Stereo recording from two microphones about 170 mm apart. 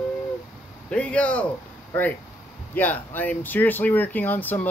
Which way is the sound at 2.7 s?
10° left (ahead or behind).